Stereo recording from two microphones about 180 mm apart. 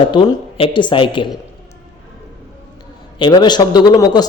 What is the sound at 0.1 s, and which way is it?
A man's voice, 25° left (ahead or behind).